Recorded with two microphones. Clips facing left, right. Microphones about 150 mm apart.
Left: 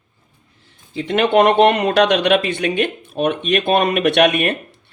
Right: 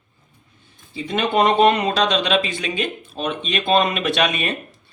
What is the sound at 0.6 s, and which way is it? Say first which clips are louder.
Speech: left 5 dB; 80° left.